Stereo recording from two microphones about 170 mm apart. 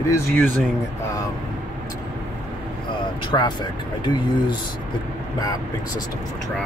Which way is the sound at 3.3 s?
20° left (ahead or behind).